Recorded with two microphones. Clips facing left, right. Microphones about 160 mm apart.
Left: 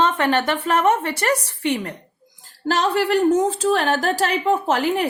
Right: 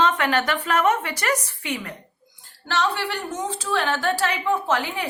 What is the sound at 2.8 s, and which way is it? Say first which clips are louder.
Speech: left 11 dB; 45° left (ahead or behind).